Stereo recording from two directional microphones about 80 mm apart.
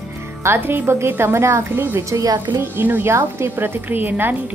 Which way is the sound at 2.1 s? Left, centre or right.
Right.